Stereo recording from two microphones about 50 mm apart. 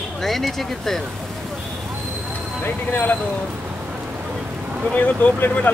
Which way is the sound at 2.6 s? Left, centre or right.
Left.